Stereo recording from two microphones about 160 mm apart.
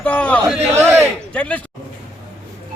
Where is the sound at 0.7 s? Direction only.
15° right (ahead or behind).